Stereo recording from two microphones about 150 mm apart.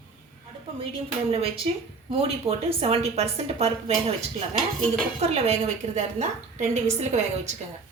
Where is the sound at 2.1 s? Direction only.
40° right (ahead or behind).